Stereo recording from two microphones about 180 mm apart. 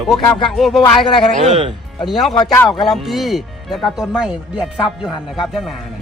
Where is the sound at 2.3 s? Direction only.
25° left (ahead or behind).